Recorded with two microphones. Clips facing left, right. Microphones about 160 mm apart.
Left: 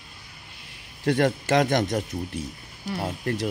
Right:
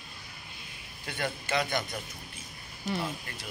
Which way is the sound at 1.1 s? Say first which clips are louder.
Left 12 dB; 80° left.